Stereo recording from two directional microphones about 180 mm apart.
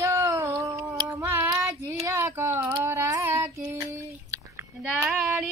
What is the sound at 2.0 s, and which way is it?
Child singing, 15° right (ahead or behind).